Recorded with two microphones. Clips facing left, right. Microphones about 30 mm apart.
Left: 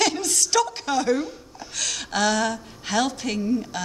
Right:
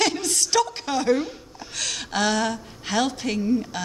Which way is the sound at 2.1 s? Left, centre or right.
Centre.